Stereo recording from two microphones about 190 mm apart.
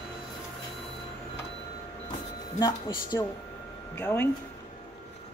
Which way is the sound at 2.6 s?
20° left (ahead or behind).